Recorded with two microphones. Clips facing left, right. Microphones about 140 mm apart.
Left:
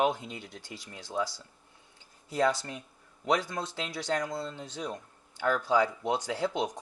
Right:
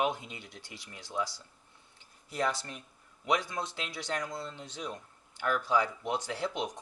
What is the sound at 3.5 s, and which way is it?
Speech, 35° left (ahead or behind).